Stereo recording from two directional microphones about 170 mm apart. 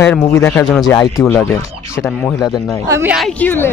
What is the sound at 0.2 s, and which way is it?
Speech, 15° left (ahead or behind).